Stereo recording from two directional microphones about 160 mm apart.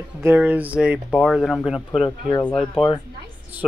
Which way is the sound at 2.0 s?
20° left (ahead or behind).